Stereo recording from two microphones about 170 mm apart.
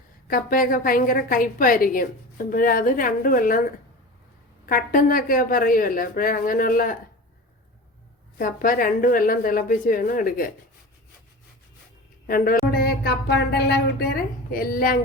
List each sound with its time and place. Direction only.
0.3 s a woman's voice: 55° left (ahead or behind)
8.4 s a woman's voice: 55° left (ahead or behind)
12.2 s a woman's voice: 55° left (ahead or behind)
12.7 s a woman's voice: 65° left (ahead or behind)